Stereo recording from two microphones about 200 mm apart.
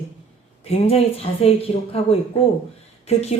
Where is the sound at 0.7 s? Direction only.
30° left (ahead or behind).